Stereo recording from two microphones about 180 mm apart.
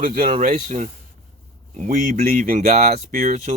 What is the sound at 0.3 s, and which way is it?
Speech, 40° right (ahead or behind).